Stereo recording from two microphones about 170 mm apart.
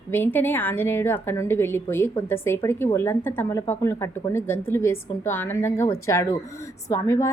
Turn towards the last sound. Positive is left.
turn(degrees=20)  # may be behind; listen again after turning